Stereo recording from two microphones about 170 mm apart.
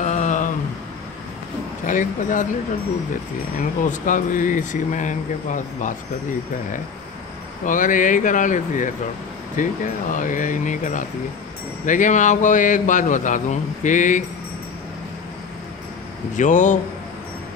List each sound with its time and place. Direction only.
0.0 s a sound: 45° left (ahead or behind)
1.9 s speech: 50° left (ahead or behind)
3.5 s speech: 50° left (ahead or behind)
7.6 s speech: 50° left (ahead or behind)
16.3 s speech: 45° left (ahead or behind)